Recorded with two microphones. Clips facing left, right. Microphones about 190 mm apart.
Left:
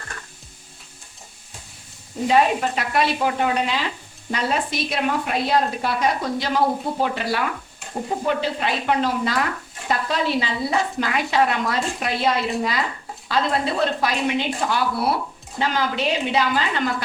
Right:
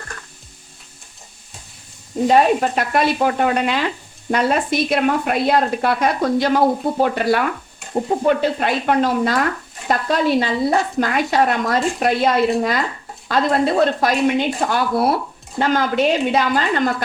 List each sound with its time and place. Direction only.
2.2 s speech: 45° right (ahead or behind)